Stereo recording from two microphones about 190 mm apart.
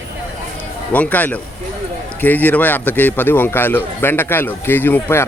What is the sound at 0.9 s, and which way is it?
A man's voice, 10° left (ahead or behind).